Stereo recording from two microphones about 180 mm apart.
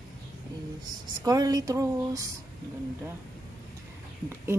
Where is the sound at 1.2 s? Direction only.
20° right (ahead or behind).